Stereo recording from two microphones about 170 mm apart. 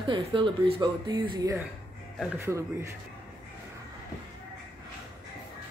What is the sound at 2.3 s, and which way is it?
Speech, 15° right (ahead or behind).